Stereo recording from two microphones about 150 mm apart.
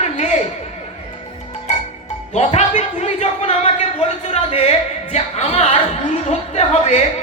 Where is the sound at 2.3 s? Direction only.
45° left (ahead or behind).